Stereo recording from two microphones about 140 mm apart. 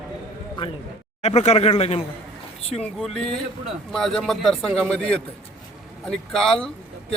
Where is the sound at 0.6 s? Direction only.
40° left (ahead or behind).